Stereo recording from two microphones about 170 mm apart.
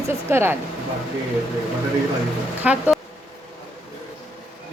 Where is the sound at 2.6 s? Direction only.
5° right (ahead or behind).